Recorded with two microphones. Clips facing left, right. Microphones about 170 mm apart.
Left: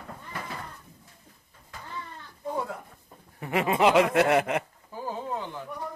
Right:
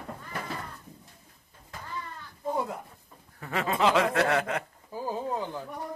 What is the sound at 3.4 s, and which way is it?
Speech, 20° left (ahead or behind).